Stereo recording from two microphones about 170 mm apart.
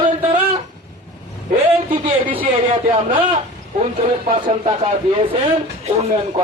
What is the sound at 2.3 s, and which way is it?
Speech, 30° right (ahead or behind).